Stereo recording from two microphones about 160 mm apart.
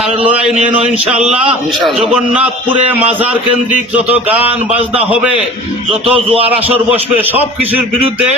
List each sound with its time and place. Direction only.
0.5 s a sound: 5° right (ahead or behind)
2.8 s a man's voice: 10° right (ahead or behind)
6.1 s speech: 35° right (ahead or behind)
7.2 s a man's voice: 10° right (ahead or behind)